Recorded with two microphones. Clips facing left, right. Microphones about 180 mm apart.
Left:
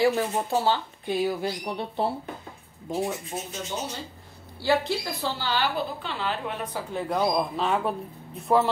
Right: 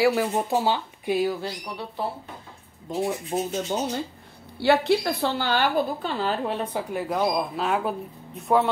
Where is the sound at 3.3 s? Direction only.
45° right (ahead or behind).